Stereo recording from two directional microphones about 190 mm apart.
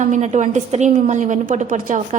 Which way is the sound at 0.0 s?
40° right (ahead or behind).